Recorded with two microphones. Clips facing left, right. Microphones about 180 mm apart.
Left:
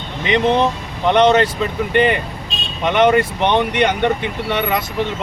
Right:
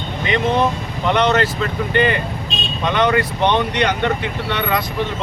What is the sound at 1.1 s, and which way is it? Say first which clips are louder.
Speech: left 4 dB; 20° left (ahead or behind).